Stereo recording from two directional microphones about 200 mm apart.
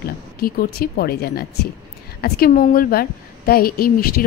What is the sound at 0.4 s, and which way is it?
A woman's voice, 50° left (ahead or behind).